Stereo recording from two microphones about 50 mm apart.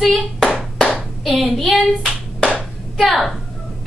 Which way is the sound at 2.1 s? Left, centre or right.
Left.